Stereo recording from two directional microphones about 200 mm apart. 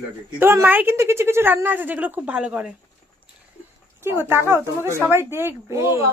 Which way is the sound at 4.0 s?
10° right (ahead or behind).